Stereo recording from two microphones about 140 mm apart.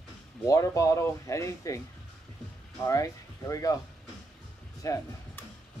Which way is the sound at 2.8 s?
25° left (ahead or behind).